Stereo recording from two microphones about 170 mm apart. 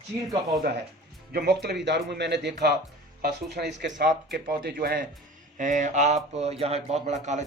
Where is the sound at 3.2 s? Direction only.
70° right (ahead or behind).